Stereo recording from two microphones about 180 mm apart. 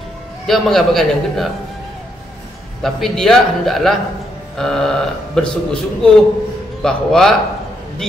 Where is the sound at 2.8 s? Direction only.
Centre (ahead or behind).